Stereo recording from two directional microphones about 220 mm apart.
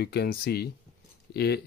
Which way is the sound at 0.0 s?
45° left (ahead or behind).